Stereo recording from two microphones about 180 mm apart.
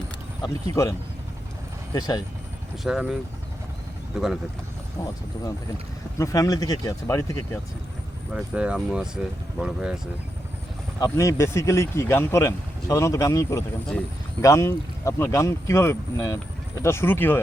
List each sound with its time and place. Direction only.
0.4 s speech: 20° left (ahead or behind)
2.8 s speech: 5° right (ahead or behind)
6.1 s speech: 15° left (ahead or behind)
8.3 s speech: 5° right (ahead or behind)
11.0 s speech: 15° left (ahead or behind)